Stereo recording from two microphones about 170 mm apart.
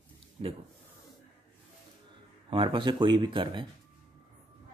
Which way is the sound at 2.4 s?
30° right (ahead or behind).